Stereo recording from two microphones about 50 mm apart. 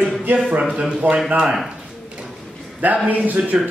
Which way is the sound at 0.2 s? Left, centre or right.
Right.